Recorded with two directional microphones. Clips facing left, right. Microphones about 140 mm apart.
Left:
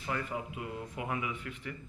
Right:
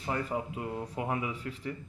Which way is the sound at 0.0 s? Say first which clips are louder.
Right 3 dB; 35° right (ahead or behind).